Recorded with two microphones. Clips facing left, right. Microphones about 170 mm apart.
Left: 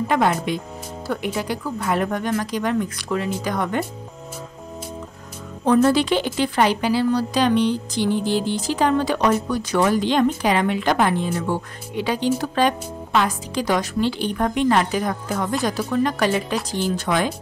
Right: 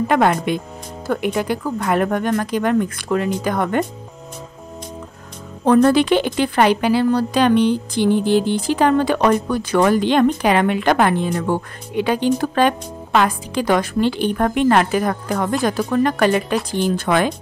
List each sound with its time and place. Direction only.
0.1 s a woman's voice: 60° right (ahead or behind)
5.7 s a woman's voice: 55° right (ahead or behind)